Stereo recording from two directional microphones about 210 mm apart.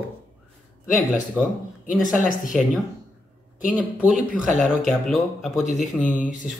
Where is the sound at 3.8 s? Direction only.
5° right (ahead or behind).